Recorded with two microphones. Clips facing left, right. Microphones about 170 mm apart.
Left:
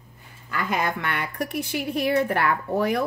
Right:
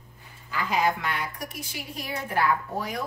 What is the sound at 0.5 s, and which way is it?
Speech, 60° left (ahead or behind).